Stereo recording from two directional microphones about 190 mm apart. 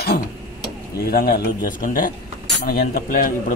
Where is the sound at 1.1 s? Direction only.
50° left (ahead or behind).